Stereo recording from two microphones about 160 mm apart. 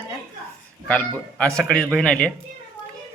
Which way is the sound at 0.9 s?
5° left (ahead or behind).